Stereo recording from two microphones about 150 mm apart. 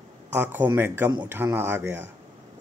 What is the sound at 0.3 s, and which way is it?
Speech, 15° right (ahead or behind).